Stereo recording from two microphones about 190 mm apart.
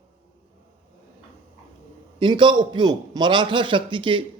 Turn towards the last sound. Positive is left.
turn(degrees=-25)  # may be behind; listen again after turning